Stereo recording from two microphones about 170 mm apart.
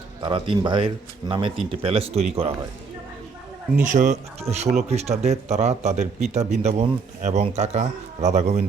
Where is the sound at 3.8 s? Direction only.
50° right (ahead or behind).